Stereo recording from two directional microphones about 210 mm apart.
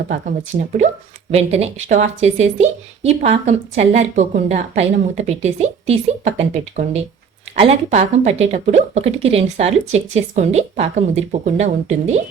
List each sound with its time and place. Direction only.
1.3 s speech: 30° right (ahead or behind)